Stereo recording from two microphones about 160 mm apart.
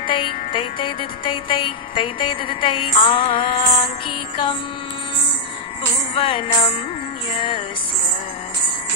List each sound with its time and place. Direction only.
0.0 s music: 30° left (ahead or behind)
6.1 s music: 30° left (ahead or behind)